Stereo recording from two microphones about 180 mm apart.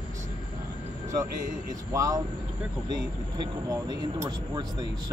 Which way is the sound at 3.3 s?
20° right (ahead or behind).